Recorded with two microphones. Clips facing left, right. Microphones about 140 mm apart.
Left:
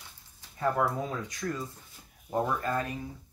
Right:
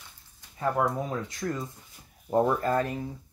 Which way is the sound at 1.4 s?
35° right (ahead or behind).